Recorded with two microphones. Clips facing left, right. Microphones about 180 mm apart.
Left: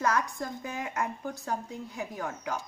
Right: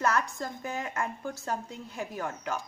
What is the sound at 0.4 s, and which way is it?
A woman's voice, 15° left (ahead or behind).